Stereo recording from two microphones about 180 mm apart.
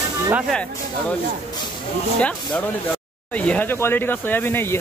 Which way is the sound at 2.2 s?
10° left (ahead or behind).